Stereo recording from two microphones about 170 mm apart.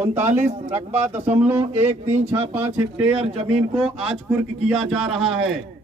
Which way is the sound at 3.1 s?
35° right (ahead or behind).